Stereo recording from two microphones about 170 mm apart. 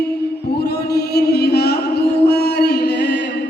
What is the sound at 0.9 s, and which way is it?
Music, 75° left (ahead or behind).